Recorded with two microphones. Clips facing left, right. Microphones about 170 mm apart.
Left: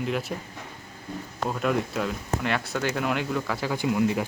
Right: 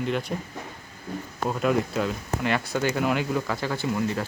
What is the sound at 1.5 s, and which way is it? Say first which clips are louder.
Speech: right 2 dB; centre (ahead or behind).